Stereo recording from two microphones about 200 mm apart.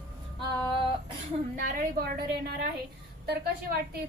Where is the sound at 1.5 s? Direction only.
45° right (ahead or behind).